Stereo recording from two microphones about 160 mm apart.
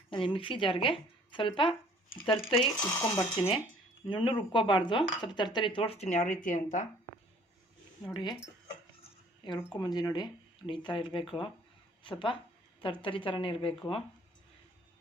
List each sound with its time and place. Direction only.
0.1 s speech: 35° left (ahead or behind)
2.9 s speech: 15° left (ahead or behind)
4.1 s speech: 30° left (ahead or behind); by 6.8 s 55° left (ahead or behind)
8.1 s speech: 30° left (ahead or behind)
9.7 s speech: 25° left (ahead or behind)